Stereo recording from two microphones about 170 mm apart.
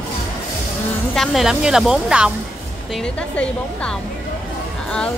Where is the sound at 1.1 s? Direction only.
Centre (ahead or behind).